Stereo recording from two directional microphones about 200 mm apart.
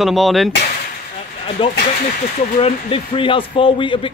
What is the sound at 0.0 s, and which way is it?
Speech, centre (ahead or behind).